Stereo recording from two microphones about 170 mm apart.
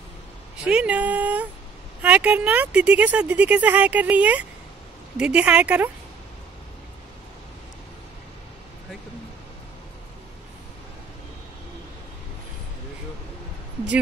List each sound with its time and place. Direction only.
0.7 s speech: 5° right (ahead or behind)